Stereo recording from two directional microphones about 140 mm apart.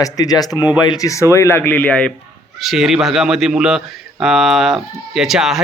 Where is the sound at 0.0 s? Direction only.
25° left (ahead or behind); by 2.1 s 10° left (ahead or behind).